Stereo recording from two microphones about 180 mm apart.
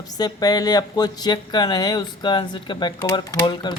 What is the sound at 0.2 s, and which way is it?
Speech, 20° left (ahead or behind).